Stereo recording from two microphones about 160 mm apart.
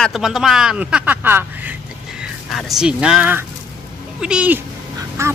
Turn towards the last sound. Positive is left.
turn(degrees=-20)  # may be behind; listen again after turning